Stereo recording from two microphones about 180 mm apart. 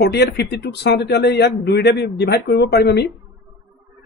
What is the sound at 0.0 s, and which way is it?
Speech, 65° left (ahead or behind).